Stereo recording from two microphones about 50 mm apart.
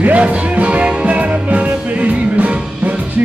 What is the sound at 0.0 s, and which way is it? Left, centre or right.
Music, right.